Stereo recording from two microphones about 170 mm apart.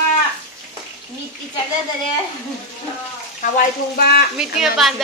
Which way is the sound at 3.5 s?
60° left (ahead or behind).